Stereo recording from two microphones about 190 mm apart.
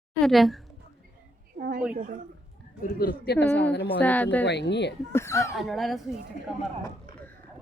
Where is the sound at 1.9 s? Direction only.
45° right (ahead or behind).